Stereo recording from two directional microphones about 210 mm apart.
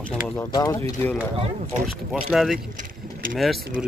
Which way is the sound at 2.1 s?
Centre (ahead or behind).